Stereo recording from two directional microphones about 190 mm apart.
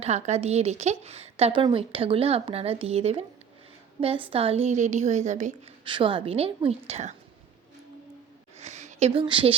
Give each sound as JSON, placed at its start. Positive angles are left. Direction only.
{"t": 0.0, "sound": "a woman's voice", "side_deg": -35}
{"t": 5.8, "sound": "a woman's voice", "side_deg": -25}
{"t": 8.5, "sound": "a sound", "side_deg": -35}